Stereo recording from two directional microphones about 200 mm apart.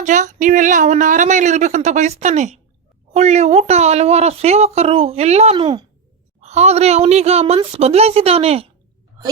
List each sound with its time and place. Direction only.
0.0 s a woman's voice: 40° right (ahead or behind)